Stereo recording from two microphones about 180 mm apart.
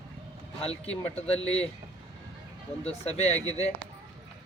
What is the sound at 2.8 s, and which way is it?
Speech, 35° left (ahead or behind).